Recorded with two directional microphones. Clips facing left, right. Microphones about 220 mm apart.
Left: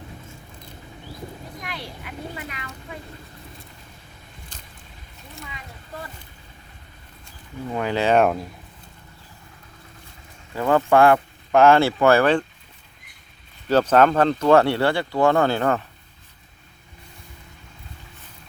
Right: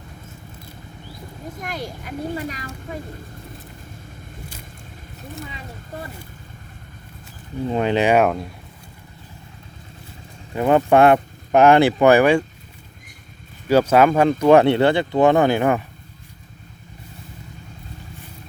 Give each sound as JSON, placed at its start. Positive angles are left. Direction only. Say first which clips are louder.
{"t": 1.6, "sound": "speech", "louder": "right 6 dB", "side_deg": -45}
{"t": 7.6, "sound": "speech", "louder": "right 4 dB", "side_deg": -25}
{"t": 8.1, "sound": "speech", "louder": "right 1 dB", "side_deg": 0}
{"t": 10.5, "sound": "speech", "louder": "right 3 dB", "side_deg": -20}
{"t": 13.7, "sound": "speech", "louder": "right 2 dB", "side_deg": -10}